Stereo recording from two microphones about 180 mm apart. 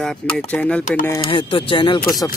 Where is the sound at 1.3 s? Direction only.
30° left (ahead or behind).